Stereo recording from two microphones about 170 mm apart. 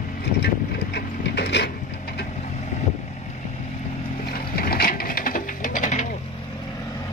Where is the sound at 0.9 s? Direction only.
90° left.